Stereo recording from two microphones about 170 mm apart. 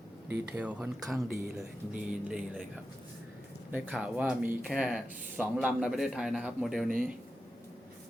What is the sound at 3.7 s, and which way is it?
A man's voice, 10° right (ahead or behind).